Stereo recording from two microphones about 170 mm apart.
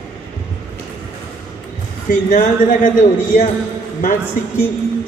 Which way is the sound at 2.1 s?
50° left (ahead or behind).